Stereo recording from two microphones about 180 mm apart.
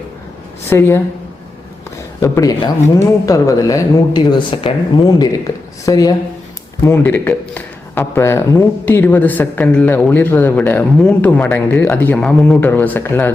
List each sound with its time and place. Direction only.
0.7 s a man's voice: 15° left (ahead or behind)
2.2 s a man's voice: 20° left (ahead or behind)